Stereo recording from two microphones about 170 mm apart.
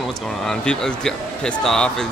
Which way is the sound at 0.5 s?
5° left (ahead or behind).